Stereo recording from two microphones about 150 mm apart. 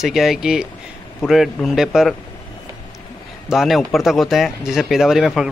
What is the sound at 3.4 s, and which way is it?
Speech, centre (ahead or behind).